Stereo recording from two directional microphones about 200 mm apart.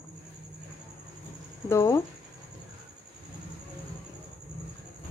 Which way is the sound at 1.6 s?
15° left (ahead or behind).